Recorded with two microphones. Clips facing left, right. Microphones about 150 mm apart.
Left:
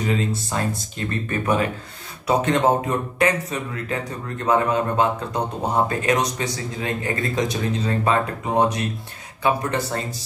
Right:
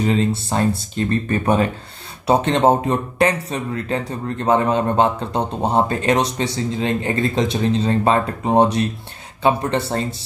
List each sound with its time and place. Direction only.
0.0 s speech: 30° right (ahead or behind)